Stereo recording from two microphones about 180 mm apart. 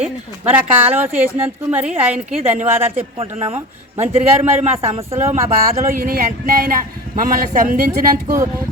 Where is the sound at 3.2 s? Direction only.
35° right (ahead or behind).